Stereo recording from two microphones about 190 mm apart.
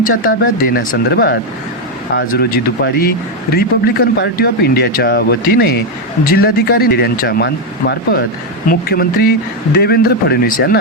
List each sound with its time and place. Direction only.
0.0 s speech: 50° left (ahead or behind)